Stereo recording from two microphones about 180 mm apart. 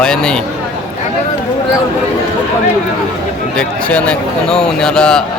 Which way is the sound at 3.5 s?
5° left (ahead or behind).